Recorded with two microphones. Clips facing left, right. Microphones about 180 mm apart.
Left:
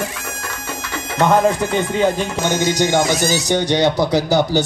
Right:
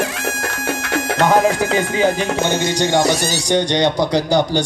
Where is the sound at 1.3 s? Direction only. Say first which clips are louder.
Even; 85° right.